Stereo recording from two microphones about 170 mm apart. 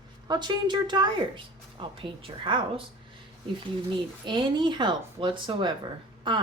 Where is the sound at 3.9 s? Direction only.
25° right (ahead or behind).